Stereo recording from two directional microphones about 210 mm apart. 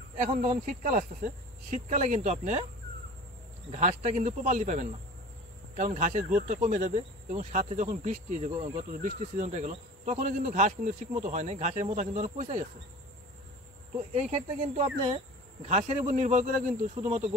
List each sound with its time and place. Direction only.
0.2 s speech: 30° right (ahead or behind)
3.7 s speech: 35° right (ahead or behind)
13.9 s speech: 30° right (ahead or behind)